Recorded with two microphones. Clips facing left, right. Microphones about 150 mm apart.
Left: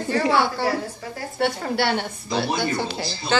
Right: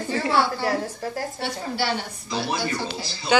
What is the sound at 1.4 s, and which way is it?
A woman's voice, 60° left (ahead or behind).